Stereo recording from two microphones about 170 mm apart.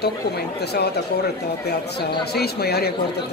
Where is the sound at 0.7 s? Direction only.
70° left (ahead or behind).